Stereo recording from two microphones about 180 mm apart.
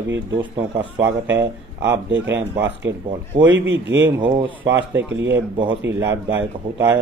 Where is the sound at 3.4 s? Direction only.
90° right.